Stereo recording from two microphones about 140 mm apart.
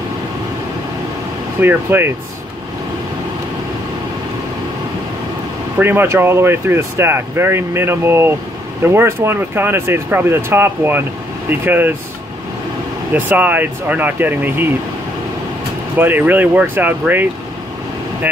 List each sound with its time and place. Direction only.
1.6 s speech: 15° right (ahead or behind)
5.8 s speech: 15° right (ahead or behind)
13.1 s speech: 10° right (ahead or behind)
16.0 s speech: 15° right (ahead or behind)